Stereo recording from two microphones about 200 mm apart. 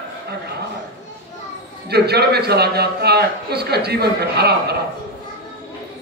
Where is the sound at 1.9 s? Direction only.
55° right (ahead or behind).